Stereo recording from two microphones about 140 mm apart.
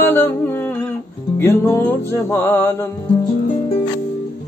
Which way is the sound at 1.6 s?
20° left (ahead or behind).